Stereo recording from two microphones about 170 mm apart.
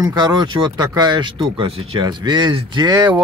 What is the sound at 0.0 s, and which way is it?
Speech, 25° right (ahead or behind).